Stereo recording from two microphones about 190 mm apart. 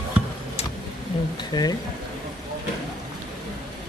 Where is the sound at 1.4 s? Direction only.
20° left (ahead or behind).